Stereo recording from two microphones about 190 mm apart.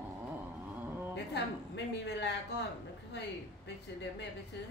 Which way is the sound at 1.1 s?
65° left (ahead or behind).